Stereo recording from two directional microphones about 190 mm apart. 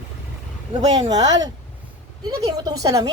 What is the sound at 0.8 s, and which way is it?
Speech, 20° right (ahead or behind).